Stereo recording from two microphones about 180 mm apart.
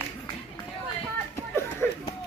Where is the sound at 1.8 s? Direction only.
10° left (ahead or behind).